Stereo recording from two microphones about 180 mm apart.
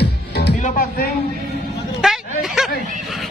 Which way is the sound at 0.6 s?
45° left (ahead or behind).